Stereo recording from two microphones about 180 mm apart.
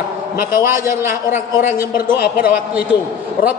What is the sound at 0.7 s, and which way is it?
A man's voice, 15° right (ahead or behind).